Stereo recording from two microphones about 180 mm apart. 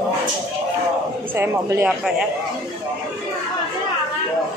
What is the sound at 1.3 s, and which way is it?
Speech, 15° right (ahead or behind).